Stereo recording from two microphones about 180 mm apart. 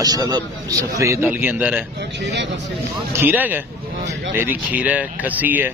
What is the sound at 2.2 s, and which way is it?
Speech, 75° right (ahead or behind).